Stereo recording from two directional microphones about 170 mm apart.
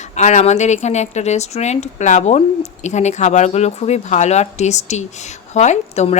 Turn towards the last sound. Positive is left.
turn(degrees=40)  # may be behind; listen again after turning